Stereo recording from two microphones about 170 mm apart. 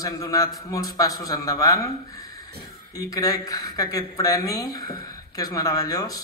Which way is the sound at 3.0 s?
20° left (ahead or behind).